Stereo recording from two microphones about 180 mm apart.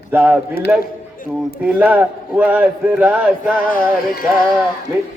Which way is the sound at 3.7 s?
55° left (ahead or behind).